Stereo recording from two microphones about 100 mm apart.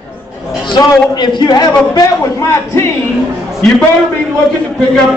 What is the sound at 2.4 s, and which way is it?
Speech, 30° left (ahead or behind).